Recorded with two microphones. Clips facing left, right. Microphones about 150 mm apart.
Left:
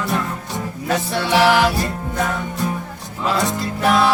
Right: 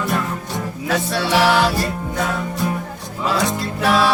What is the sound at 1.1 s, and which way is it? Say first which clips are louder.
Music: left 1 dB; 15° left (ahead or behind).